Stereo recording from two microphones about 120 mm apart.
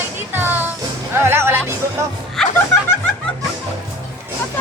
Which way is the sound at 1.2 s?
20° right (ahead or behind).